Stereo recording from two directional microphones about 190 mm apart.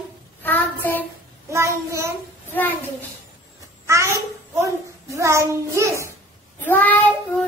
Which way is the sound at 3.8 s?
15° right (ahead or behind).